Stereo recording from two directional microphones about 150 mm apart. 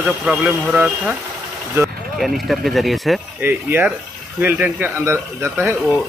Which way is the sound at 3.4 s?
15° right (ahead or behind).